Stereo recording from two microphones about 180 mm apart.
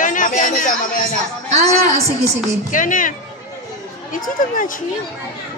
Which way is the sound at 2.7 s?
45° left (ahead or behind).